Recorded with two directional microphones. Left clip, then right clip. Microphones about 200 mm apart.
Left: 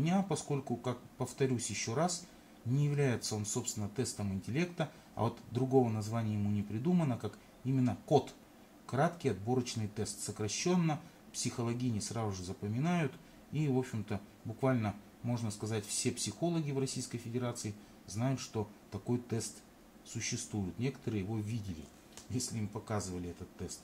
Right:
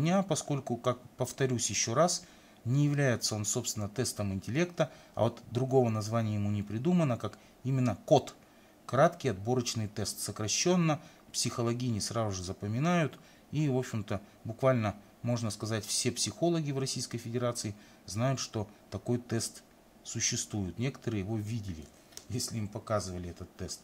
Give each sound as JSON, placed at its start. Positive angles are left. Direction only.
{"t": 0.0, "sound": "speech", "side_deg": -45}